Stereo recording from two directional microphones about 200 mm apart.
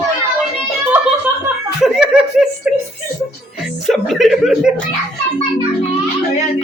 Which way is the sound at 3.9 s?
Centre (ahead or behind).